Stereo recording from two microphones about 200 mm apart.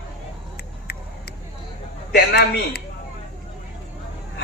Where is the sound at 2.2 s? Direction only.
55° left (ahead or behind).